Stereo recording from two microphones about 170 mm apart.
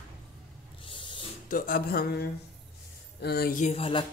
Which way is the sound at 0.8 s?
30° left (ahead or behind).